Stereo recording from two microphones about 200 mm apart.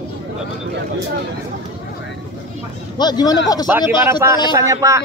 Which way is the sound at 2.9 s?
20° left (ahead or behind).